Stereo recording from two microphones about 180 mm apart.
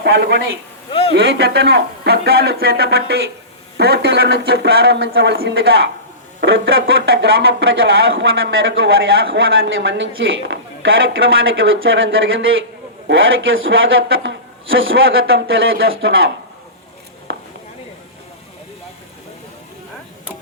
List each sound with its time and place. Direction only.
0.0 s a man's voice: 65° right (ahead or behind)
6.4 s a woman's voice: 85° right